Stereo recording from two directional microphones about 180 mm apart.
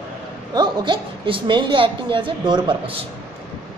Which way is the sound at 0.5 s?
25° right (ahead or behind).